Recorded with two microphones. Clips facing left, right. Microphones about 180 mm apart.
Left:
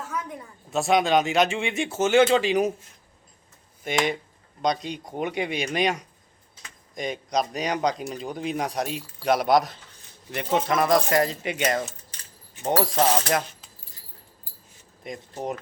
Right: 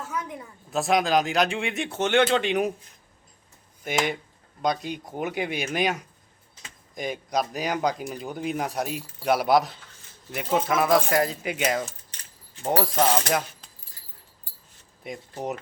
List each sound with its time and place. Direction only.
0.1 s speech: centre (ahead or behind)
3.8 s speech: centre (ahead or behind)
15.0 s speech: 5° right (ahead or behind)